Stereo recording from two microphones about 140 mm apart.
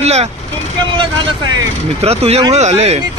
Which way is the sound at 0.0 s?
50° right (ahead or behind).